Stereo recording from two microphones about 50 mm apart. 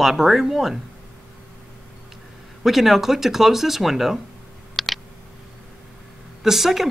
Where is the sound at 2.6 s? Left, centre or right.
Centre.